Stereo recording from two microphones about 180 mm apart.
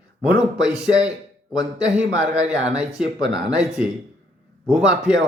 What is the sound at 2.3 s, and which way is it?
Speech, 5° right (ahead or behind).